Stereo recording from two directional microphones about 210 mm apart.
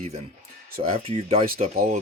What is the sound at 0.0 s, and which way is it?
Speech, 30° right (ahead or behind).